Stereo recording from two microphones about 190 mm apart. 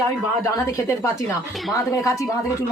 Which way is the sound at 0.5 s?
15° left (ahead or behind).